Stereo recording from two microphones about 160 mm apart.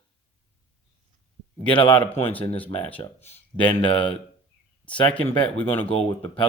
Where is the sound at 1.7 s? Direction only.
30° left (ahead or behind).